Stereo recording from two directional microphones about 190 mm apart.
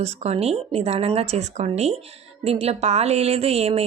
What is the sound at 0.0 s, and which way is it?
A woman's voice, 35° right (ahead or behind).